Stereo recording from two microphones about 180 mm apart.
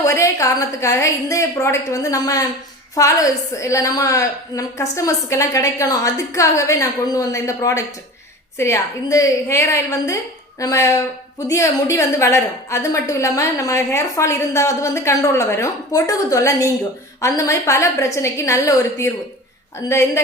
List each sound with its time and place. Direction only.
0.0 s a woman's voice: 15° left (ahead or behind)